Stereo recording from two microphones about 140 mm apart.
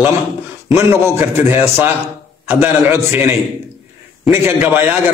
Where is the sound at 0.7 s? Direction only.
20° right (ahead or behind).